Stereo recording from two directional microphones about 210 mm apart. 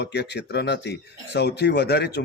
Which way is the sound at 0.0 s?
55° left (ahead or behind).